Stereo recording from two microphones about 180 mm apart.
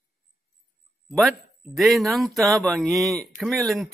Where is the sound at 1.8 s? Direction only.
Centre (ahead or behind).